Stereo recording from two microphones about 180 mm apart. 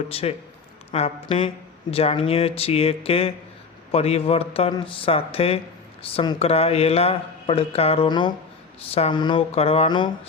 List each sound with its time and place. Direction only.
0.1 s speech: 35° left (ahead or behind)